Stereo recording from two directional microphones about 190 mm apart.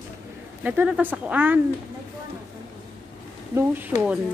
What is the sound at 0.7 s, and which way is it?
Speech, 5° right (ahead or behind).